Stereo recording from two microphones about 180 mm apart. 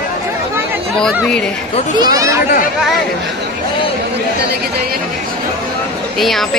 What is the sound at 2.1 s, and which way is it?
Speech, 20° right (ahead or behind).